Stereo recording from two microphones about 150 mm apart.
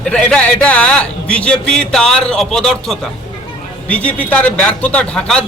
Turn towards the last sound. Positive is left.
turn(degrees=5)  # may be behind; listen again after turning